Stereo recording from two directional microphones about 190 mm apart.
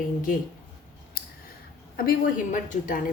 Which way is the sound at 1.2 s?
50° left (ahead or behind).